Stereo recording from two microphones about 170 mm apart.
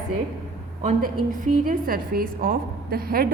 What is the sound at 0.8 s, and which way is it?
A woman's voice, 50° right (ahead or behind).